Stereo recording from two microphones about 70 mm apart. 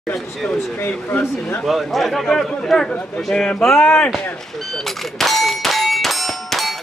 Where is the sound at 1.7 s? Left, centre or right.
Centre.